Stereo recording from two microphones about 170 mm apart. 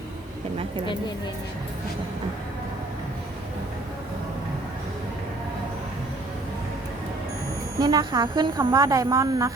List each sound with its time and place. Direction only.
7.8 s a woman's voice: 20° right (ahead or behind)